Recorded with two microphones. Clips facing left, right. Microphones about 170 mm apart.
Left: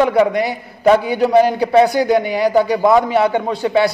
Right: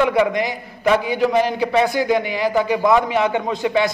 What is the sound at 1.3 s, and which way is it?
A man's voice, 35° left (ahead or behind).